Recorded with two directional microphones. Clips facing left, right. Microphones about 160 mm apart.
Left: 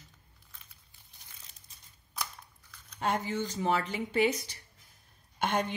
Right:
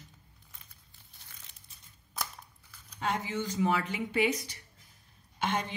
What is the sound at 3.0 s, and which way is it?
Speech, 50° left (ahead or behind).